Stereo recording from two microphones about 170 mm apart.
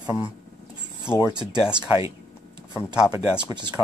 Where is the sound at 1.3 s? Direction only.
25° right (ahead or behind).